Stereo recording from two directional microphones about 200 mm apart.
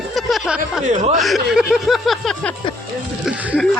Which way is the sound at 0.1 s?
Centre (ahead or behind).